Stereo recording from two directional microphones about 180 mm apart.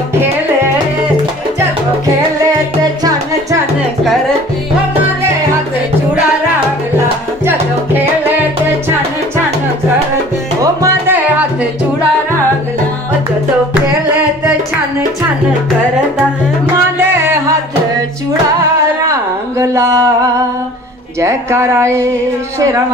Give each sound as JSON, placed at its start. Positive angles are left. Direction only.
{"t": 7.4, "sound": "music", "side_deg": -10}
{"t": 10.6, "sound": "music", "side_deg": -15}
{"t": 17.0, "sound": "music", "side_deg": -15}
{"t": 19.6, "sound": "a sound", "side_deg": -15}